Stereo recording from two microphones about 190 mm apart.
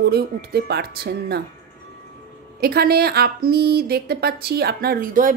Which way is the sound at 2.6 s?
55° right (ahead or behind).